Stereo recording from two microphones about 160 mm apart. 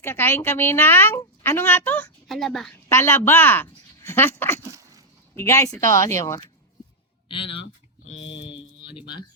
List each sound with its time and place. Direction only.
0.0 s a woman's voice: 15° left (ahead or behind)
2.9 s speech: 15° left (ahead or behind)
7.3 s speech: 35° left (ahead or behind)